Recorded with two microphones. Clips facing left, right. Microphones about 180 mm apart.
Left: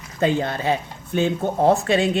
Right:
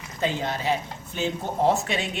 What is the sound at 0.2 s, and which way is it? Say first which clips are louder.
Speech: left 6 dB; 55° left (ahead or behind).